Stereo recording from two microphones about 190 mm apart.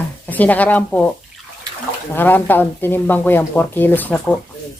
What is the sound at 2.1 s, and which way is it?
Speech, 10° left (ahead or behind).